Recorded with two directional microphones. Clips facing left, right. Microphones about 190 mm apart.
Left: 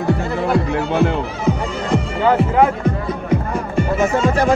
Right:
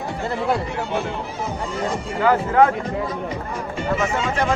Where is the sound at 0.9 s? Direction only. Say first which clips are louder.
Left 9 dB; 75° left (ahead or behind).